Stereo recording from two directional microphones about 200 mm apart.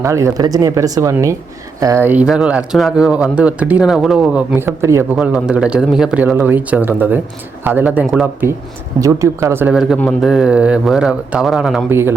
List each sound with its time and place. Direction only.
0.0 s a man's voice: 15° right (ahead or behind)
11.9 s a man's voice: 10° right (ahead or behind)